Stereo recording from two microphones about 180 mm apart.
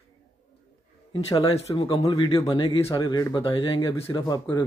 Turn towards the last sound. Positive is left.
turn(degrees=20)  # may be behind; listen again after turning